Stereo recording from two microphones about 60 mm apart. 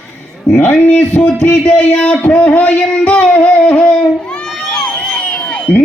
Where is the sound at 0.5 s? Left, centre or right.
Left.